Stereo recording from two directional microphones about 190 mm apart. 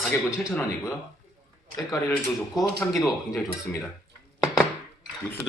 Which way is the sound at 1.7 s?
15° left (ahead or behind).